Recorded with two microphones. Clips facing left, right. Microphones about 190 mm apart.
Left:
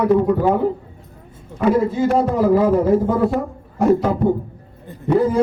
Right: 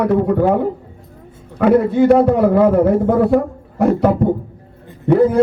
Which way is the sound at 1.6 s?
60° right (ahead or behind).